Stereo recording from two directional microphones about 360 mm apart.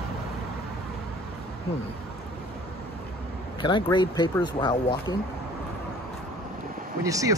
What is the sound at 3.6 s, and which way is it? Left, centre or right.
Speech, centre.